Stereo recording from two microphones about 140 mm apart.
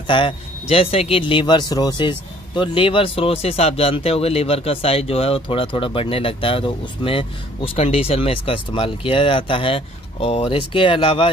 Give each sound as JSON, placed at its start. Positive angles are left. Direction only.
{"t": 0.0, "sound": "a man's voice", "side_deg": 35}